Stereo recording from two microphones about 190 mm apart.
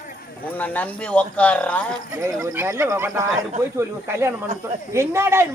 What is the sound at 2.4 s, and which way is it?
Speech, 15° right (ahead or behind).